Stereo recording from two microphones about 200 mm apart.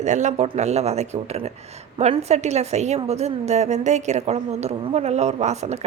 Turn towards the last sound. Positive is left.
turn(degrees=-35)  # may be behind; listen again after turning